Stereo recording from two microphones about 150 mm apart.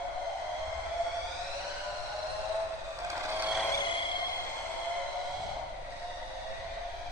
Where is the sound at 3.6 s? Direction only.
30° left (ahead or behind).